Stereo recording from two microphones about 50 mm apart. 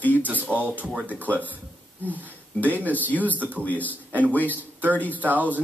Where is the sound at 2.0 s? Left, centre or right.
Left.